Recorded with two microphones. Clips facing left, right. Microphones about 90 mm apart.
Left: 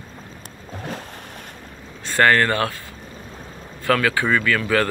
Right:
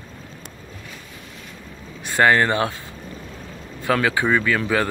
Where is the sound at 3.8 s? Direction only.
20° right (ahead or behind).